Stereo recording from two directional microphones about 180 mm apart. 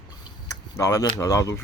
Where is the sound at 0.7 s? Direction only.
15° left (ahead or behind).